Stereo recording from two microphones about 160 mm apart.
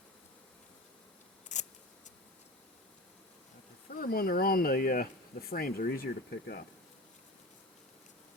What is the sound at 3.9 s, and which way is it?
Speech, 65° left (ahead or behind).